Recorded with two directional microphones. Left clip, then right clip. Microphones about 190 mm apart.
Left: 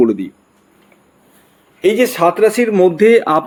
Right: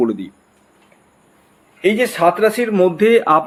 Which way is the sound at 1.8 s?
35° left (ahead or behind).